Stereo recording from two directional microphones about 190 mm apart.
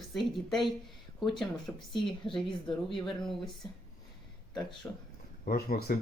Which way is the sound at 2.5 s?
25° left (ahead or behind).